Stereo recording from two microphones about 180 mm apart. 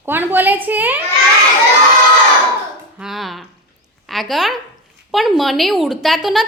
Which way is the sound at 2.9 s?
Centre (ahead or behind).